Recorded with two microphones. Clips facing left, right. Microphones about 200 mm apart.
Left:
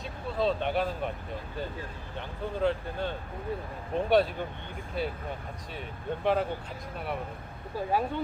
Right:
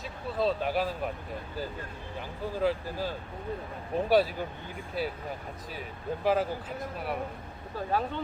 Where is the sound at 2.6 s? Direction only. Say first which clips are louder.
Even; 5° right (ahead or behind).